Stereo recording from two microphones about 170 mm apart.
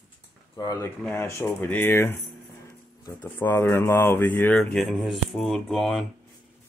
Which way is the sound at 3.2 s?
15° left (ahead or behind).